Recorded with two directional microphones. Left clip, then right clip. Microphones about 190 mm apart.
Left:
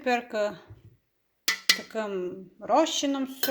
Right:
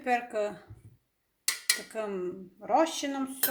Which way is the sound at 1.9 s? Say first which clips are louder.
Left 3 dB; 35° left (ahead or behind).